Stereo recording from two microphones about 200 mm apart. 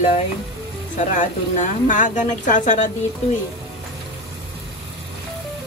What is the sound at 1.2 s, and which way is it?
Speech, 40° left (ahead or behind).